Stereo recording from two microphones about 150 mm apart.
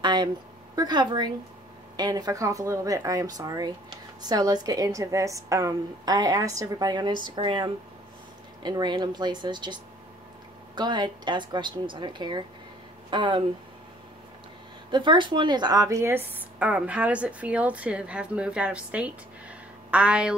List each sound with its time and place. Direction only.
0.0 s a sound: 30° right (ahead or behind)
0.7 s a woman's voice: 30° right (ahead or behind)
14.9 s speech: 30° right (ahead or behind); by 20.3 s 5° right (ahead or behind)